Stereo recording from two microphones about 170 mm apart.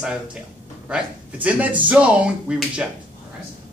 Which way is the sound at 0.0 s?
5° right (ahead or behind).